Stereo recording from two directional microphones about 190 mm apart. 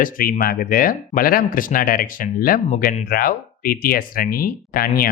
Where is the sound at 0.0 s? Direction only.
50° left (ahead or behind).